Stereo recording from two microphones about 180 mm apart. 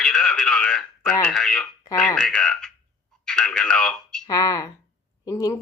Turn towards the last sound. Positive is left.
turn(degrees=20)  # may be behind; listen again after turning